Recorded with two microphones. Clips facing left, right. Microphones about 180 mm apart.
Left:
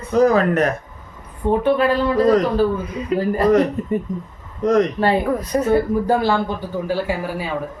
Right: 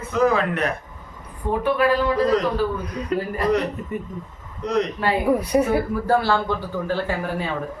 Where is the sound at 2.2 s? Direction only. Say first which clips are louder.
Left 8 dB; 45° left (ahead or behind).